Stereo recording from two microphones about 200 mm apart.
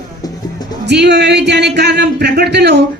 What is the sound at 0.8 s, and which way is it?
Speech, 60° right (ahead or behind).